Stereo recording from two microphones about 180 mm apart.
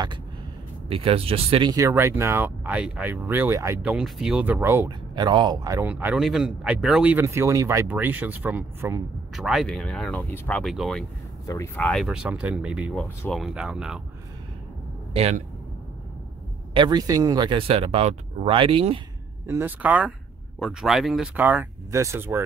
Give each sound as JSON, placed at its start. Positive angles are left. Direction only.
{"t": 0.8, "sound": "speech", "side_deg": -30}
{"t": 9.3, "sound": "speech", "side_deg": 0}
{"t": 10.6, "sound": "speech", "side_deg": 0}
{"t": 11.4, "sound": "speech", "side_deg": 15}
{"t": 12.9, "sound": "speech", "side_deg": 5}
{"t": 15.1, "sound": "speech", "side_deg": -35}
{"t": 16.7, "sound": "speech", "side_deg": -25}
{"t": 19.4, "sound": "speech", "side_deg": -10}